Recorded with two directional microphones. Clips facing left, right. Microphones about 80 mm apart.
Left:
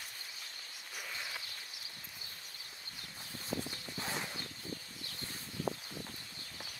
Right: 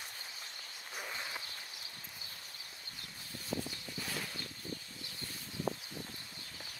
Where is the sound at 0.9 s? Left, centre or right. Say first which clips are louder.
Right 2 dB; right.